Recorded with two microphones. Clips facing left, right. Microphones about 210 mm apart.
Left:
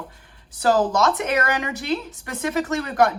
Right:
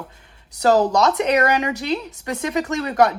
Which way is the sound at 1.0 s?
20° right (ahead or behind).